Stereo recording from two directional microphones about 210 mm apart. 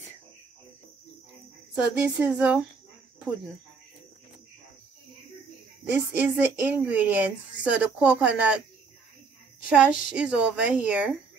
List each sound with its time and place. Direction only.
1.8 s speech: 5° right (ahead or behind)
5.9 s a woman's voice: 5° right (ahead or behind)
9.7 s speech: 5° right (ahead or behind)